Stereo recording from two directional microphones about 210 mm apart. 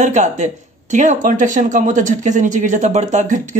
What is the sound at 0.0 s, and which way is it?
Speech, 35° right (ahead or behind).